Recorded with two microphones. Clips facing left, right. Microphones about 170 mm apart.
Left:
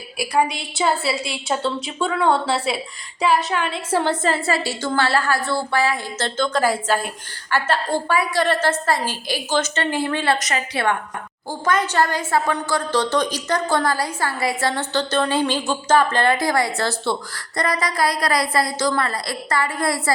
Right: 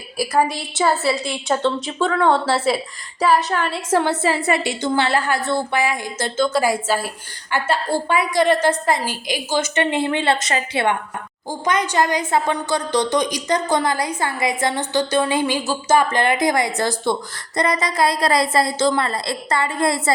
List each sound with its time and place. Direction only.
0.2 s a woman's voice: centre (ahead or behind)
4.0 s a woman's voice: 10° right (ahead or behind)